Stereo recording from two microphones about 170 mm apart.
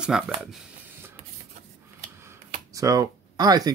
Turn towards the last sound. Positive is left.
turn(degrees=-20)  # may be behind; listen again after turning